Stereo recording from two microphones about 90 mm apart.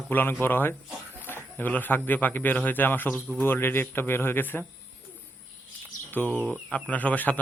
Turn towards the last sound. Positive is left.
turn(degrees=20)  # may be behind; listen again after turning